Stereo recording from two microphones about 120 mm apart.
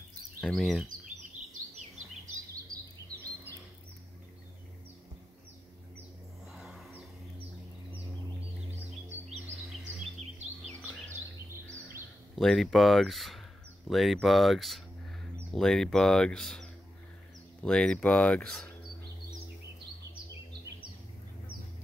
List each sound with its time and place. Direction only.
0.4 s speech: centre (ahead or behind)
6.5 s a sound: 5° right (ahead or behind)
10.7 s bird vocalization: 15° left (ahead or behind)
12.4 s speech: centre (ahead or behind)